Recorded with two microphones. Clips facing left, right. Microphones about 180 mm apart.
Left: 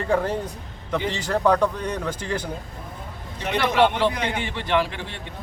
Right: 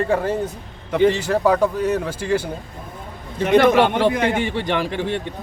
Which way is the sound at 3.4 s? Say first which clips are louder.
Right 6 dB; 50° right (ahead or behind).